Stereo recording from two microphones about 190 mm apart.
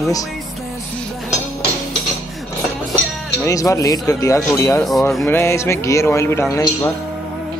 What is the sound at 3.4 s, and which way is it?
Speech, 15° left (ahead or behind).